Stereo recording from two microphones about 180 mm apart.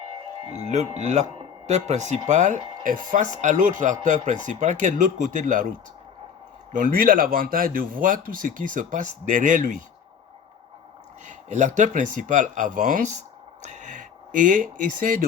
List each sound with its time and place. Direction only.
0.4 s speech: 35° right (ahead or behind)
6.7 s speech: 55° right (ahead or behind)
11.3 s speech: 45° right (ahead or behind)